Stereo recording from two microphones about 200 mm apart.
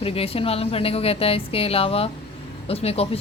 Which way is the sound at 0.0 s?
30° left (ahead or behind).